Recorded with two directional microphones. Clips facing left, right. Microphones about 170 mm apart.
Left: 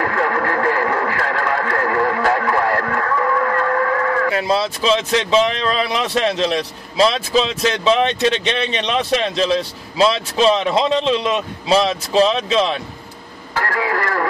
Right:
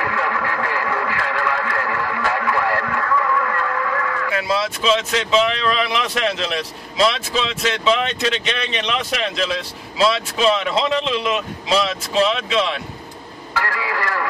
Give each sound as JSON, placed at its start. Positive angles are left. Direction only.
{"t": 0.0, "sound": "speech", "side_deg": 45}
{"t": 13.7, "sound": "speech", "side_deg": 45}